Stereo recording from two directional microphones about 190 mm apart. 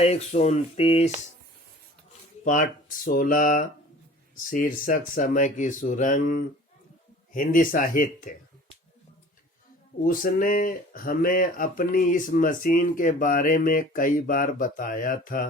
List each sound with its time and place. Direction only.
0.0 s speech: 35° left (ahead or behind)
2.4 s speech: 45° left (ahead or behind)
10.0 s speech: 45° left (ahead or behind)